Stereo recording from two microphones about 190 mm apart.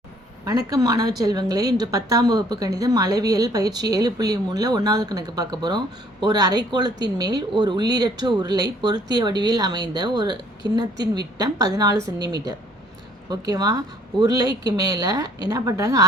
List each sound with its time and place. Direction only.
0.4 s a woman's voice: 20° right (ahead or behind)